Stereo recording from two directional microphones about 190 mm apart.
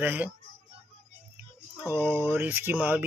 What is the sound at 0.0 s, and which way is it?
Speech, 10° right (ahead or behind).